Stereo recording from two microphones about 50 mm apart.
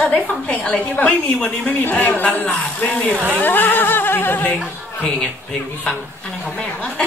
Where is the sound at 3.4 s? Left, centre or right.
Left.